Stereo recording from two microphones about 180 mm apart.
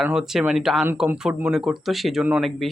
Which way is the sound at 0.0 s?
5° right (ahead or behind).